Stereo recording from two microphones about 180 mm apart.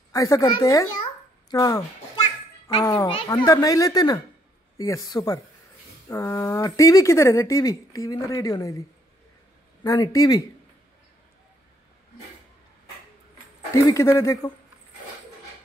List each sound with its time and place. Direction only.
0.1 s a child's voice: 20° left (ahead or behind)
9.8 s a woman's voice: 20° left (ahead or behind)
13.8 s speech: 15° left (ahead or behind)